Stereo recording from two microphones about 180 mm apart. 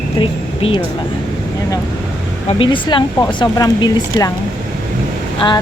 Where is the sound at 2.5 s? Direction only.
25° left (ahead or behind).